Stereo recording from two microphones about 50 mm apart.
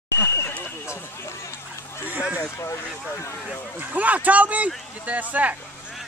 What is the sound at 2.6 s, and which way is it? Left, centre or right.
Speech, left.